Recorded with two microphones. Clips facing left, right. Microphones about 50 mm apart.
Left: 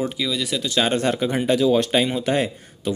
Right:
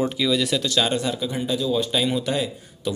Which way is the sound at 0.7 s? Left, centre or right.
Left.